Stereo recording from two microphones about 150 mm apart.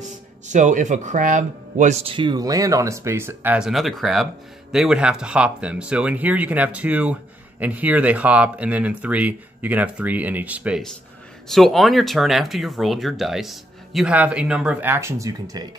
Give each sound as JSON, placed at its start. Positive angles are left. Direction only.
{"t": 0.0, "sound": "speech", "side_deg": -55}
{"t": 11.4, "sound": "speech", "side_deg": 0}